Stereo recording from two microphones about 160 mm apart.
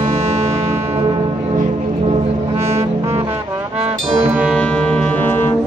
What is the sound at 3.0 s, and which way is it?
Music, 20° right (ahead or behind).